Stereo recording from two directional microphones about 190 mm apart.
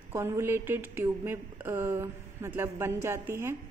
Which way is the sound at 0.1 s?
15° right (ahead or behind).